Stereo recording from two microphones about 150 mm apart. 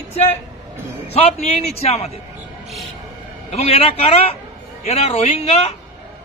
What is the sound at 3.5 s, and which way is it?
A man's voice, 45° left (ahead or behind).